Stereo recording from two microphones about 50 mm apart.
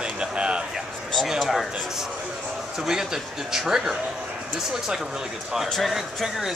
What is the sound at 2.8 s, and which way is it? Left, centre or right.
Speech, centre.